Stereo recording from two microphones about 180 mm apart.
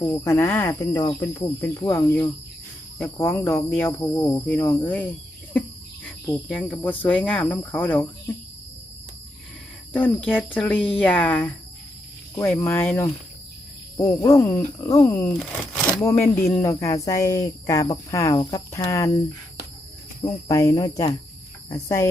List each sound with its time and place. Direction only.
0.0 s cricket: 15° left (ahead or behind)
5.5 s speech: 10° left (ahead or behind)
9.9 s cricket: 5° left (ahead or behind)
14.2 s cricket: 15° left (ahead or behind)
20.5 s cricket: 15° left (ahead or behind)